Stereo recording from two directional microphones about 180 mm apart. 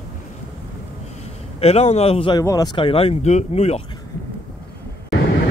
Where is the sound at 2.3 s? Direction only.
20° left (ahead or behind); by 3.8 s 35° left (ahead or behind).